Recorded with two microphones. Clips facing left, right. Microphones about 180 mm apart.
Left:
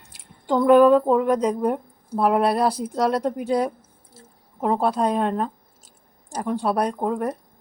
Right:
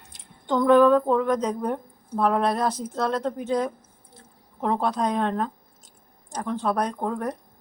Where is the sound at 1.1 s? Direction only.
10° left (ahead or behind).